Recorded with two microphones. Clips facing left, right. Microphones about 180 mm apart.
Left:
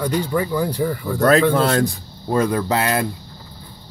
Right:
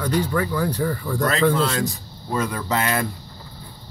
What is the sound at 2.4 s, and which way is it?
Speech, 40° left (ahead or behind).